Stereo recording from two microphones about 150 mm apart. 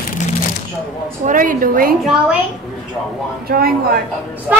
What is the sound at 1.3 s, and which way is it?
Speech, 65° right (ahead or behind).